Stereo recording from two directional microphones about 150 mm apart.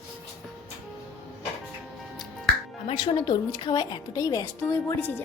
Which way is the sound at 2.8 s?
30° left (ahead or behind).